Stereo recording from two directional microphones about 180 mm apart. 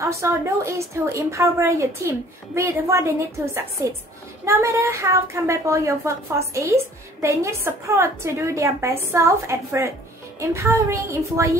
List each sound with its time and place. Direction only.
0.0 s a woman's voice: 15° right (ahead or behind)